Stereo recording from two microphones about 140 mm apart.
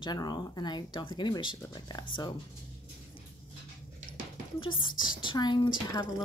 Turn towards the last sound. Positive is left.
turn(degrees=30)  # may be behind; listen again after turning